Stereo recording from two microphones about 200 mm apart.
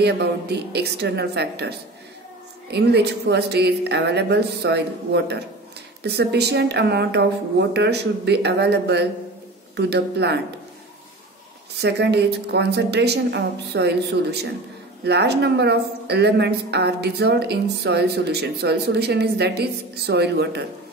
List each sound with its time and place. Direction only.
0.0 s speech: 55° right (ahead or behind)
11.8 s speech: 55° right (ahead or behind)